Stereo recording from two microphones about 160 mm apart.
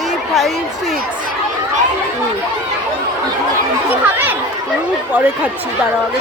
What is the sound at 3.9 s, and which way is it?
Speech, 10° right (ahead or behind).